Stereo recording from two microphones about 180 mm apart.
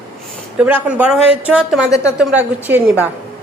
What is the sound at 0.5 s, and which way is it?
A woman's voice, 10° right (ahead or behind).